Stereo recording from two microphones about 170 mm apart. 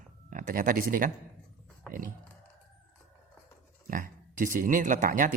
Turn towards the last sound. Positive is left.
turn(degrees=-50)  # may be behind; listen again after turning